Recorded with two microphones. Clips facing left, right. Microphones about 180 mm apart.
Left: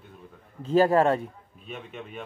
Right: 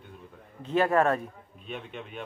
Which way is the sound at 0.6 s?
35° left (ahead or behind).